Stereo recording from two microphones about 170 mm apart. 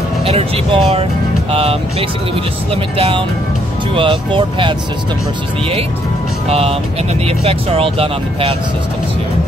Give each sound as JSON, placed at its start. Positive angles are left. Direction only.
{"t": 0.2, "sound": "speech", "side_deg": -35}
{"t": 6.5, "sound": "speech", "side_deg": -35}